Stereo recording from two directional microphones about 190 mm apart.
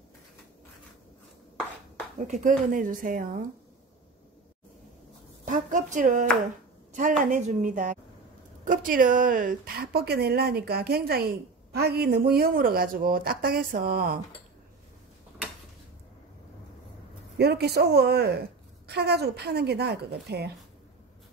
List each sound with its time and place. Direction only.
2.2 s speech: 40° right (ahead or behind)
5.4 s a woman's voice: 40° right (ahead or behind)
17.4 s a woman's voice: 60° right (ahead or behind)